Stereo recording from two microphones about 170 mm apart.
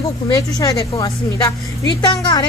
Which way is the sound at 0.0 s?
20° left (ahead or behind).